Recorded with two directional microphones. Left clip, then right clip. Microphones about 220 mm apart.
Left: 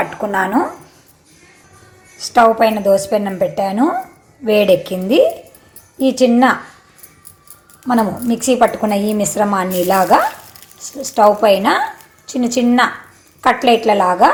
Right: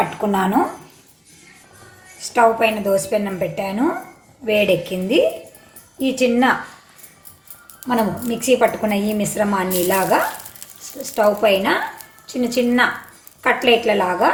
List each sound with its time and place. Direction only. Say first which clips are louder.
0.3 s speech: left 3 dB; 15° left (ahead or behind)
2.3 s a woman's voice: left 4 dB; 25° left (ahead or behind)
7.9 s a woman's voice: left 4 dB; 25° left (ahead or behind)